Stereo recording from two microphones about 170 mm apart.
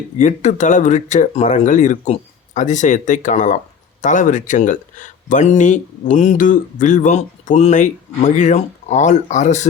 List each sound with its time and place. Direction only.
0.2 s speech: 45° left (ahead or behind)